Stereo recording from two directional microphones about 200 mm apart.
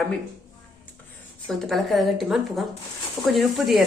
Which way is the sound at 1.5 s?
Centre (ahead or behind).